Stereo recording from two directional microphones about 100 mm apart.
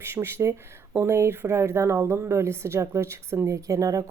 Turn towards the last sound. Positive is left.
turn(degrees=-35)  # may be behind; listen again after turning